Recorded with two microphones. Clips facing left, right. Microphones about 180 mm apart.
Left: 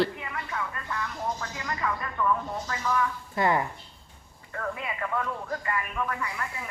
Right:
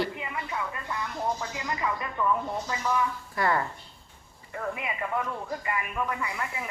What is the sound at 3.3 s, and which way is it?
Speech, 20° left (ahead or behind).